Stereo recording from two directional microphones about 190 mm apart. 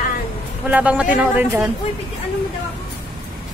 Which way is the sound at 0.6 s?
5° right (ahead or behind).